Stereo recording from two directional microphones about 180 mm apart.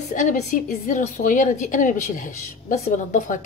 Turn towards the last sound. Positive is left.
turn(degrees=45)  # may be behind; listen again after turning